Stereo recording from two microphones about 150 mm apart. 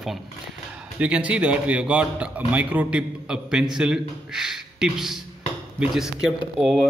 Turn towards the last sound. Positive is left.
turn(degrees=-5)  # may be behind; listen again after turning